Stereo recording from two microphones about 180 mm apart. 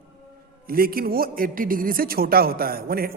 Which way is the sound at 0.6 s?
55° right (ahead or behind).